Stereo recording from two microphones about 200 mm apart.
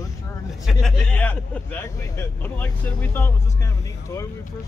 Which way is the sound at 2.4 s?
10° left (ahead or behind).